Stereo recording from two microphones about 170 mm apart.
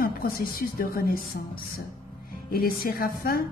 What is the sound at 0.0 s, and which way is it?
A woman's voice, 60° left (ahead or behind).